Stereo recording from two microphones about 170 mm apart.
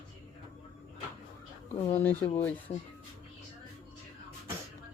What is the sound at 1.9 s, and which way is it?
Speech, 10° left (ahead or behind).